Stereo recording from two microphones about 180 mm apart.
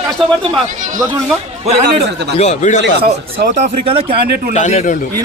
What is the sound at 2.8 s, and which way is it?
Speech, 70° right (ahead or behind).